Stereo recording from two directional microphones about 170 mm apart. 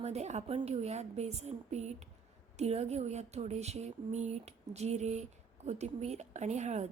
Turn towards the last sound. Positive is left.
turn(degrees=-45)  # may be behind; listen again after turning